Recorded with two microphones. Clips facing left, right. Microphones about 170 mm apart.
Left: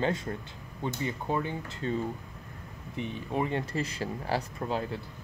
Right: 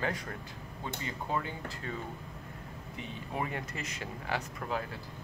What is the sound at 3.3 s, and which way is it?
Speech, 25° left (ahead or behind).